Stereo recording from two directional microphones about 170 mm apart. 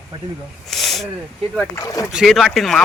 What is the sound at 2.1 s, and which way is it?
Speech, centre (ahead or behind).